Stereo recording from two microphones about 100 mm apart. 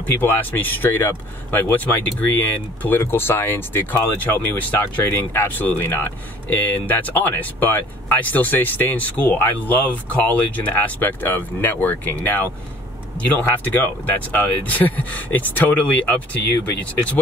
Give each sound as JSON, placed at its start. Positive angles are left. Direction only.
{"t": 0.0, "sound": "speech", "side_deg": 20}